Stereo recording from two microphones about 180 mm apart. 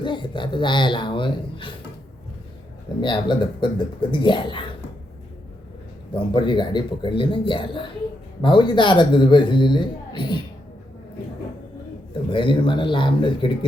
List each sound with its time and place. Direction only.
0.0 s a man's voice: 25° left (ahead or behind)
3.0 s a man's voice: 25° left (ahead or behind)
6.1 s a man's voice: 25° left (ahead or behind)
12.3 s a man's voice: 30° left (ahead or behind)